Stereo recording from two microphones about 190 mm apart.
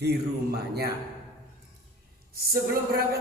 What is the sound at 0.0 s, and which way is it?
Speech, 60° right (ahead or behind).